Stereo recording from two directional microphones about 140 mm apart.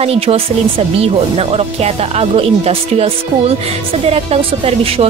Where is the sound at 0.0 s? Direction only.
45° right (ahead or behind).